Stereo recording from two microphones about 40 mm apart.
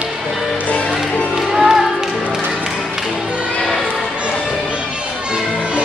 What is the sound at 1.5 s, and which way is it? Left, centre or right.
Music, centre.